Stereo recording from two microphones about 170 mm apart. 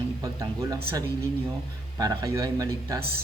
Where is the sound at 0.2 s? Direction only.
20° right (ahead or behind).